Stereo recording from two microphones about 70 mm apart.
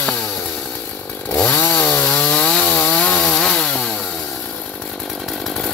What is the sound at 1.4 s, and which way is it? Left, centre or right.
Chainsaw, left.